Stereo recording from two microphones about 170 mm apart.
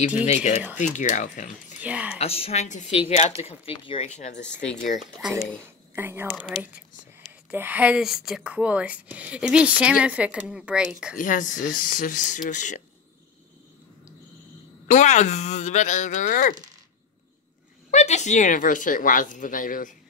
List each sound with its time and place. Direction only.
0.2 s a woman's voice: 40° left (ahead or behind)
1.8 s speech: 10° right (ahead or behind)
2.1 s a woman's voice: 35° left (ahead or behind)
5.9 s speech: 15° right (ahead or behind)
7.5 s speech: 10° right (ahead or behind)
11.1 s speech: 50° left (ahead or behind)
14.9 s speech: 45° left (ahead or behind)
17.9 s speech: 40° left (ahead or behind)